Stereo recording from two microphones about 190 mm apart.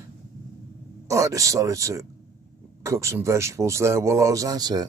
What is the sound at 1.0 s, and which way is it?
Speech, 15° right (ahead or behind).